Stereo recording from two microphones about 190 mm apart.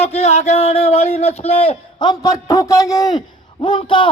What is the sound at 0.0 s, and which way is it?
A man's voice, 35° left (ahead or behind).